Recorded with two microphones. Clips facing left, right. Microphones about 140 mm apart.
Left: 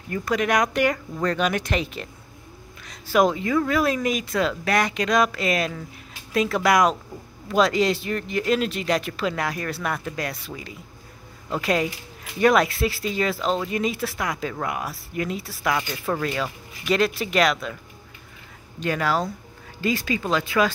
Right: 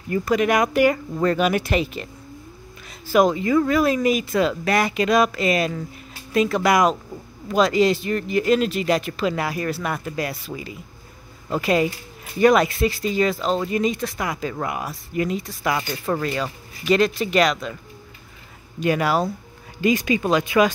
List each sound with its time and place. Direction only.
0.1 s speech: centre (ahead or behind)
18.8 s speech: 15° right (ahead or behind)